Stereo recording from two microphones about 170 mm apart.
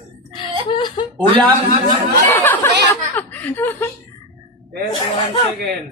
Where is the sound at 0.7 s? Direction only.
25° left (ahead or behind).